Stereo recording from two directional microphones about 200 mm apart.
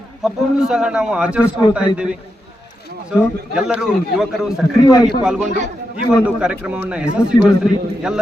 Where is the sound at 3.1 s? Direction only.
5° right (ahead or behind).